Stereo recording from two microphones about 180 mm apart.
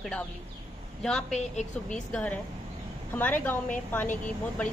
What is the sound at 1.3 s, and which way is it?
Speech, 40° left (ahead or behind).